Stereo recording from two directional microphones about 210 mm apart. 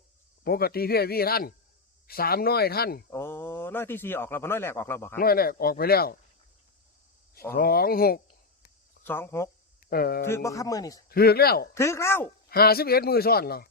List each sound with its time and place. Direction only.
0.4 s speech: 50° left (ahead or behind)
3.1 s a man's voice: 10° left (ahead or behind)
5.2 s speech: 45° left (ahead or behind)
7.5 s speech: 45° left (ahead or behind)
9.0 s a man's voice: 10° left (ahead or behind)
9.9 s speech: 45° left (ahead or behind)
10.2 s a man's voice: 15° left (ahead or behind)
11.1 s speech: 50° left (ahead or behind)
11.7 s a man's voice: 15° left (ahead or behind)
12.5 s speech: 45° left (ahead or behind)